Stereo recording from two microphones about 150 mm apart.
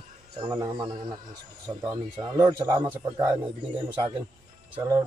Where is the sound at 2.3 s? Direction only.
30° right (ahead or behind).